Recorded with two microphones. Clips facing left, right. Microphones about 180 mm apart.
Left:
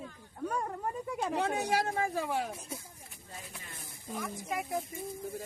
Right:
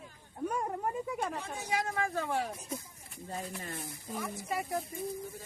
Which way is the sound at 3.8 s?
Centre (ahead or behind).